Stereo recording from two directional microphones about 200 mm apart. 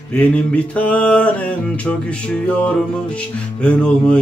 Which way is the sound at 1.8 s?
5° left (ahead or behind).